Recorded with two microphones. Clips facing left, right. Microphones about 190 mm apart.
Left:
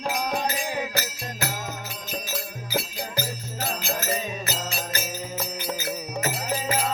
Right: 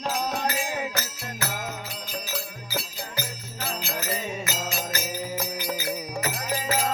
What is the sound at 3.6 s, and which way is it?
Music, 40° left (ahead or behind).